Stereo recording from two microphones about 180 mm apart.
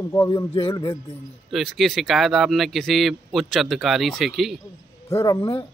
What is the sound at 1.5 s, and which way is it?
Speech, centre (ahead or behind).